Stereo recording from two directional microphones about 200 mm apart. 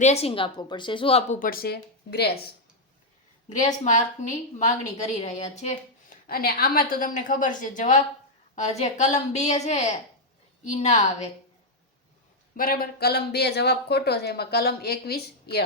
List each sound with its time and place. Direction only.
0.0 s a woman's voice: 30° left (ahead or behind)
1.4 s speech: 45° left (ahead or behind)
3.8 s a woman's voice: 35° left (ahead or behind)
12.5 s speech: 45° left (ahead or behind)